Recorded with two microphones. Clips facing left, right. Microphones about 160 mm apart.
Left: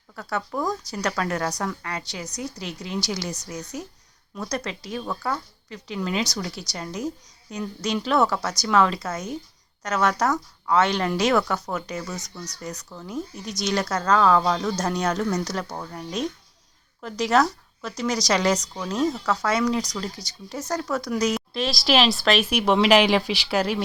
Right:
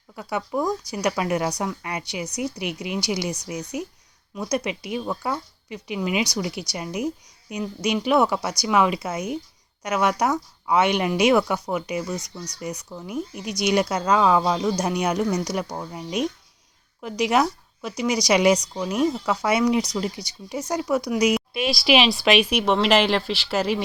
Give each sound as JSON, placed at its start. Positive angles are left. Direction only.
{"t": 0.2, "sound": "speech", "side_deg": -15}
{"t": 21.3, "sound": "speech", "side_deg": -5}